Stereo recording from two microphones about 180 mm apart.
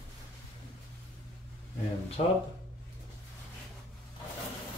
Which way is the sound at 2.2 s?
35° left (ahead or behind).